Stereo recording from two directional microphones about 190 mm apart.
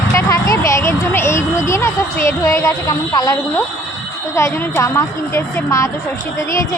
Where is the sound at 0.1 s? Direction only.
15° left (ahead or behind).